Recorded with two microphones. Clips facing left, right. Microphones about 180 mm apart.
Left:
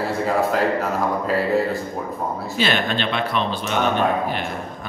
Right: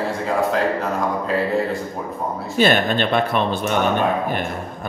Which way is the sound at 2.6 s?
45° right (ahead or behind).